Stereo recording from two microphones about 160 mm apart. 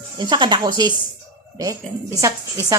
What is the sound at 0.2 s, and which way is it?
Speech, 30° right (ahead or behind).